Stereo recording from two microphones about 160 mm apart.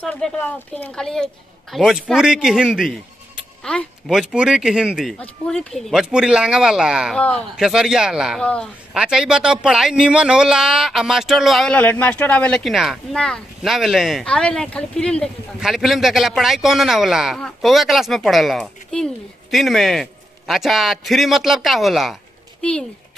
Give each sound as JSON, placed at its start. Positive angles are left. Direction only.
{"t": 0.0, "sound": "a man's voice", "side_deg": 10}
{"t": 7.2, "sound": "speech", "side_deg": 5}
{"t": 7.6, "sound": "a man's voice", "side_deg": -5}